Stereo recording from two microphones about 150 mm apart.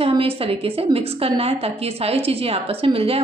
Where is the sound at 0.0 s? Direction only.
40° right (ahead or behind).